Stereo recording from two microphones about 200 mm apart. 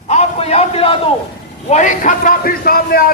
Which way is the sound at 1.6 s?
40° left (ahead or behind).